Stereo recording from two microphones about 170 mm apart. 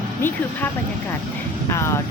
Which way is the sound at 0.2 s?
10° left (ahead or behind).